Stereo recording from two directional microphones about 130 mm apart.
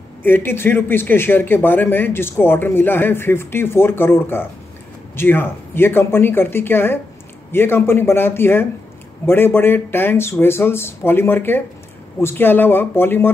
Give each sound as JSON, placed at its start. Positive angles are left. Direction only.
{"t": 0.2, "sound": "speech", "side_deg": 15}